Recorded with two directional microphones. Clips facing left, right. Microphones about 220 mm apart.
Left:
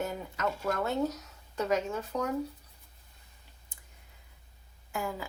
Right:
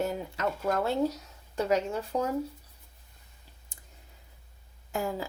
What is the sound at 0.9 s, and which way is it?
Speech, 30° right (ahead or behind).